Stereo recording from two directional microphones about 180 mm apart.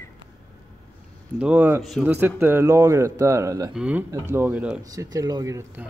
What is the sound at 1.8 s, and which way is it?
Speech, centre (ahead or behind).